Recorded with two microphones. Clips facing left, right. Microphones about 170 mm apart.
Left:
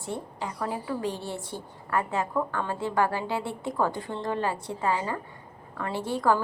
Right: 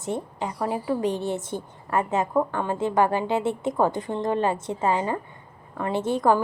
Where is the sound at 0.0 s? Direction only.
20° right (ahead or behind).